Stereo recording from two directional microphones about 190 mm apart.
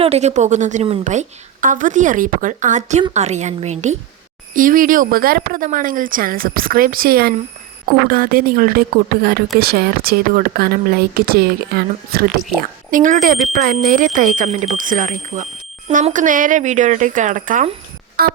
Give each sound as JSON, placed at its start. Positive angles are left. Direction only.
{"t": 0.0, "sound": "a woman's voice", "side_deg": -35}